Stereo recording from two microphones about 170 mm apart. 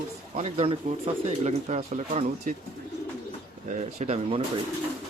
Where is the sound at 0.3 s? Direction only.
35° right (ahead or behind).